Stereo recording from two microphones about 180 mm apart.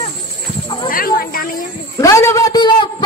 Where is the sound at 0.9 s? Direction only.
55° left (ahead or behind).